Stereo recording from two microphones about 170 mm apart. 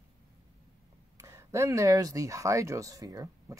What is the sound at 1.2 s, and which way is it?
Speech, 15° right (ahead or behind).